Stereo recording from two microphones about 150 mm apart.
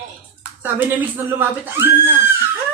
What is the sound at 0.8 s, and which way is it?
Speech, 10° right (ahead or behind).